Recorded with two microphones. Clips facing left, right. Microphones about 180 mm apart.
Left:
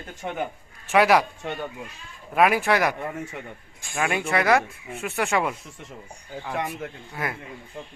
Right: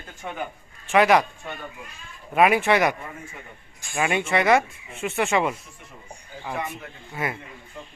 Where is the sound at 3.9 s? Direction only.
Centre (ahead or behind).